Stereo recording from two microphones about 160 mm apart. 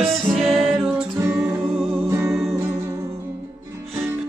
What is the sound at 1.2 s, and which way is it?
Music, 20° right (ahead or behind).